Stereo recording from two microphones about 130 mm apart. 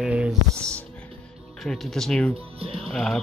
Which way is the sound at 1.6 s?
Centre (ahead or behind).